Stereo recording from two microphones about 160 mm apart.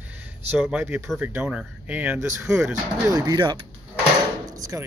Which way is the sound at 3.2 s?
25° right (ahead or behind).